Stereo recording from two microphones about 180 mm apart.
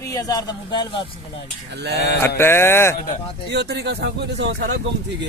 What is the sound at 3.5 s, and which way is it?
Speech, 70° right (ahead or behind).